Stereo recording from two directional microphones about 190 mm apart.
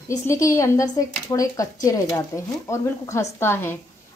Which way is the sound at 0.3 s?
15° left (ahead or behind).